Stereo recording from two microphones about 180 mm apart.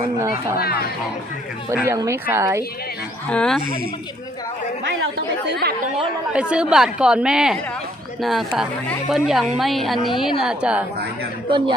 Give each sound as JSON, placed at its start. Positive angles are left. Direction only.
{"t": 0.5, "sound": "speech", "side_deg": 60}
{"t": 1.7, "sound": "speech", "side_deg": -15}
{"t": 3.2, "sound": "a woman's voice", "side_deg": 5}
{"t": 5.1, "sound": "speech", "side_deg": -60}
{"t": 6.3, "sound": "a woman's voice", "side_deg": -5}
{"t": 11.4, "sound": "speech", "side_deg": -30}